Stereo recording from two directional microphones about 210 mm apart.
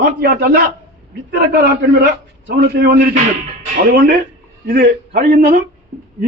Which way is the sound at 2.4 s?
50° right (ahead or behind).